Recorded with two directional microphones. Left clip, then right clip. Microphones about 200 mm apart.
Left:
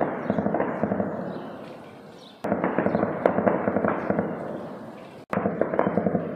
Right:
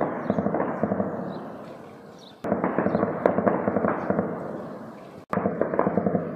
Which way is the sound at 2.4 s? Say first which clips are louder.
Even; centre (ahead or behind).